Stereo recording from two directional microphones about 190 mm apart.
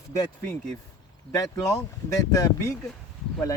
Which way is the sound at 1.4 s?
20° left (ahead or behind).